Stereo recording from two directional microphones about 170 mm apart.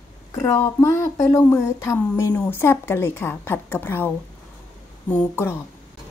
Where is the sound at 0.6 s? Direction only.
15° left (ahead or behind).